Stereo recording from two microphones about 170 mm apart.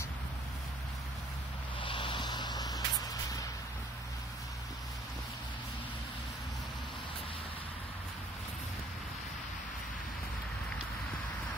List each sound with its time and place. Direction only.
1.8 s vehicle: 30° left (ahead or behind)